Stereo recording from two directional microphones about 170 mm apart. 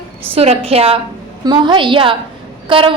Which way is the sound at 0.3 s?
35° right (ahead or behind).